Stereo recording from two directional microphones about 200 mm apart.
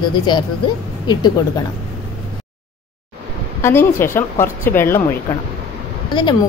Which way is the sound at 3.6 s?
10° left (ahead or behind).